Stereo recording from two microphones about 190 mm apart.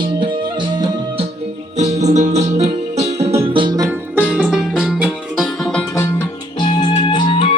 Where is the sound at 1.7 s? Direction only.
35° right (ahead or behind).